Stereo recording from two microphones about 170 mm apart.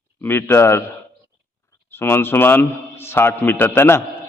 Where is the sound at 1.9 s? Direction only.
15° left (ahead or behind).